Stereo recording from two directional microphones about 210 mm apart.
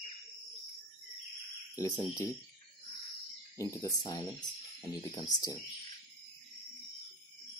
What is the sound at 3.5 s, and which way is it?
Speech, 15° left (ahead or behind).